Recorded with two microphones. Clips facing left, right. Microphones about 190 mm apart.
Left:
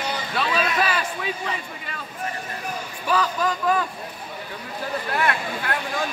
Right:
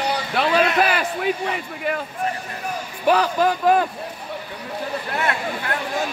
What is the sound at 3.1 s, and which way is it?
Speech, 65° right (ahead or behind).